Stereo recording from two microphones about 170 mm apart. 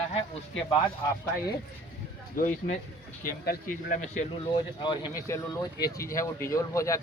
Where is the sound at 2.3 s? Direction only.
45° left (ahead or behind).